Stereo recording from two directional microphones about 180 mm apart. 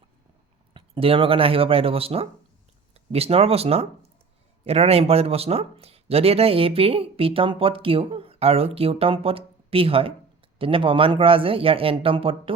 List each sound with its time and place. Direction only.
0.7 s speech: 30° right (ahead or behind)